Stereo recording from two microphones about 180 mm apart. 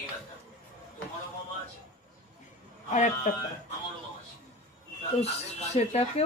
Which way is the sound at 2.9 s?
45° left (ahead or behind).